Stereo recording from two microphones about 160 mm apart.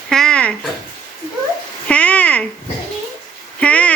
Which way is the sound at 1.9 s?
10° left (ahead or behind).